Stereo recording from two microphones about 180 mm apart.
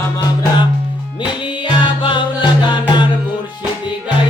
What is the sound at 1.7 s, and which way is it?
Music, 30° left (ahead or behind).